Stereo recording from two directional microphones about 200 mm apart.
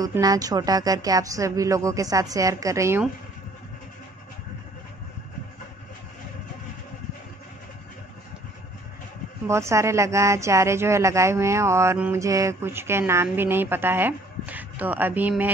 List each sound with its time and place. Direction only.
0.0 s speech: 20° right (ahead or behind)
9.5 s speech: 15° right (ahead or behind)